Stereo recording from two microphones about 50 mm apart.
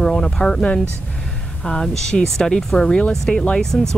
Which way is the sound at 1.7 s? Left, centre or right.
Centre.